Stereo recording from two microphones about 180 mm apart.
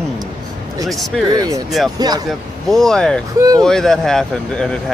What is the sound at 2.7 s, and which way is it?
Speech, 5° left (ahead or behind).